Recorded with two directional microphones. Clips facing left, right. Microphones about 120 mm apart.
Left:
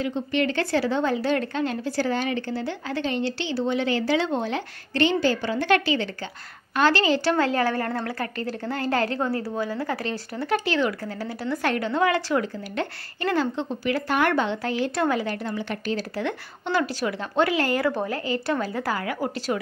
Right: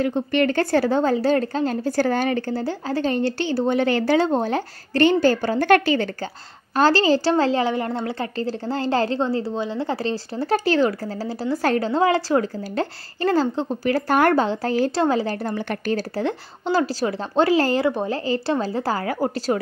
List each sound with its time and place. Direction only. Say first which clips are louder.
0.0 s speech: right 5 dB; 50° right (ahead or behind)
6.8 s a woman's voice: right 4 dB; 35° right (ahead or behind)
7.6 s a woman's voice: right 2 dB; 20° right (ahead or behind); by 16.3 s 45° right (ahead or behind)
16.3 s a woman's voice: right 4 dB; 30° right (ahead or behind)